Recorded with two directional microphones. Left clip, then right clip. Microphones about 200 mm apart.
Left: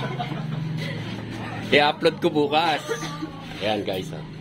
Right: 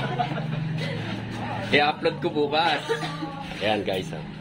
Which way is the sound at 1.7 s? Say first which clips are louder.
Left 3 dB; 50° left (ahead or behind).